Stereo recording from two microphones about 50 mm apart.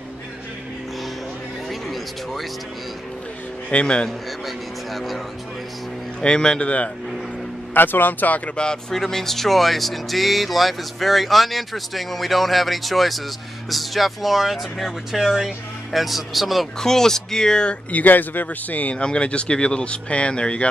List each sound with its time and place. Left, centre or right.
1.7 s music: centre
3.7 s speech: centre
4.5 s speech: centre
6.2 s speech: centre
7.7 s speech: left
8.6 s speech: centre
8.9 s speech: centre
16.8 s speech: centre
17.9 s speech: left
18.9 s speech: left